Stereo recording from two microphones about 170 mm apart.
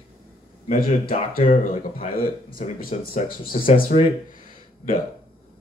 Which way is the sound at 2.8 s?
60° left (ahead or behind).